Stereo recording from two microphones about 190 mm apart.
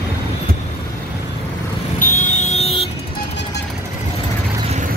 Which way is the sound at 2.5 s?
30° left (ahead or behind).